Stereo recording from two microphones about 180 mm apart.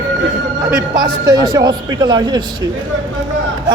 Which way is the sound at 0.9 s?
25° right (ahead or behind).